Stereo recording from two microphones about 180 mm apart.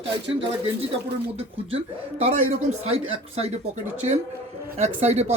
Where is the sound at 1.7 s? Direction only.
35° right (ahead or behind).